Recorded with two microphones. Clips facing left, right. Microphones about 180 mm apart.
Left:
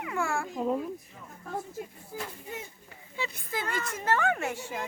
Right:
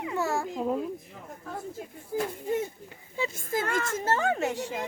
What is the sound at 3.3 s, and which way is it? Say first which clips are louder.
Speech: right 5 dB; 45° right (ahead or behind).